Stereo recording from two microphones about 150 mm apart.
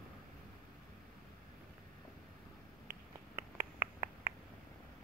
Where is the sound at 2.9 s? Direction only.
15° right (ahead or behind).